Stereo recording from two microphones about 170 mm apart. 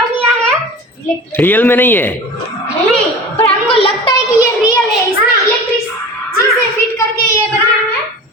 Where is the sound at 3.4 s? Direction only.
35° left (ahead or behind).